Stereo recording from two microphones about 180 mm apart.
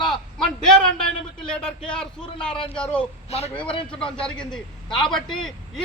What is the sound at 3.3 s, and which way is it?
Speech, 35° left (ahead or behind).